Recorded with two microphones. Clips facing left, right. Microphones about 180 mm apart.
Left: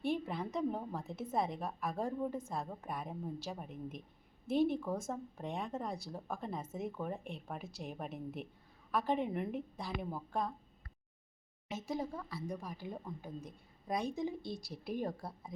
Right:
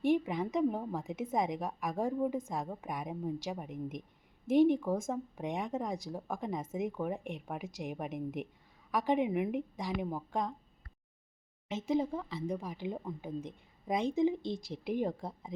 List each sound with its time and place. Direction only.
0.0 s a woman's voice: 15° right (ahead or behind)
11.7 s a woman's voice: 20° right (ahead or behind)